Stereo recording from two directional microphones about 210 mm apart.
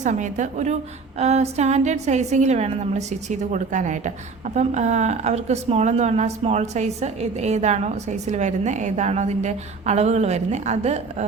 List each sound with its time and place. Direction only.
0.0 s a woman's voice: 35° right (ahead or behind)